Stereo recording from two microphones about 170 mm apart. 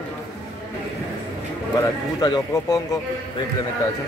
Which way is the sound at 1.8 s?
25° left (ahead or behind).